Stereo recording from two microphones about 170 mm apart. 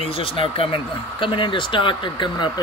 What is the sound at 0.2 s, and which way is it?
Speech, 30° left (ahead or behind).